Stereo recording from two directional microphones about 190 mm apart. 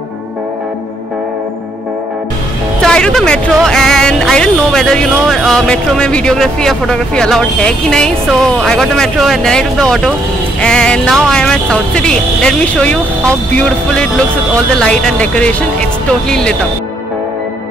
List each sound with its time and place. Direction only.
2.8 s speech: 5° left (ahead or behind)